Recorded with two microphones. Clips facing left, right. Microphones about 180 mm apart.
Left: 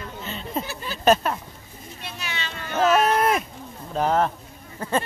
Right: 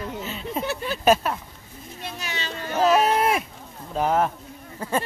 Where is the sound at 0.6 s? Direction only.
65° right (ahead or behind).